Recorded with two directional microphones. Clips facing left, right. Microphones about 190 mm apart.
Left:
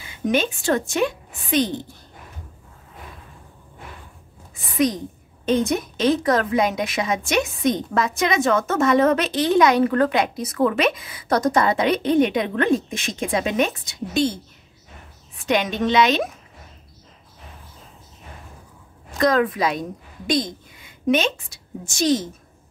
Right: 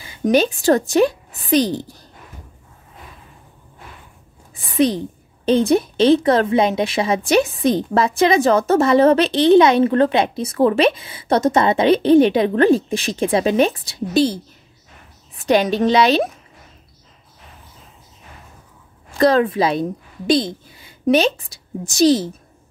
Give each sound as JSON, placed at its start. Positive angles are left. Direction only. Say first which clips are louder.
{"t": 0.2, "sound": "a woman's voice", "louder": "right 6 dB", "side_deg": -40}
{"t": 4.7, "sound": "a woman's voice", "louder": "right 4 dB", "side_deg": -30}
{"t": 19.1, "sound": "a woman's voice", "louder": "right 4 dB", "side_deg": -30}